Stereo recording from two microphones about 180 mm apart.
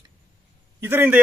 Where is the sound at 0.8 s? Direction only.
10° right (ahead or behind).